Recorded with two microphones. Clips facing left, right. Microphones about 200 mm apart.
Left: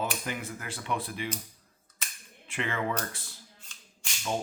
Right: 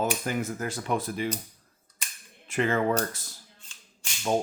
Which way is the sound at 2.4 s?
40° right (ahead or behind).